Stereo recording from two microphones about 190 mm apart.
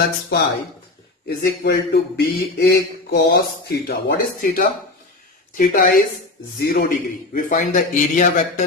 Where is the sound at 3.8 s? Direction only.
50° left (ahead or behind).